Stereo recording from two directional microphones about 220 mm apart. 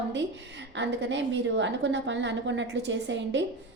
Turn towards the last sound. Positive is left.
turn(degrees=-55)  # may be behind; listen again after turning